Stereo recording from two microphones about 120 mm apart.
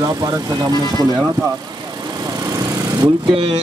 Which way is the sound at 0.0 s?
30° right (ahead or behind).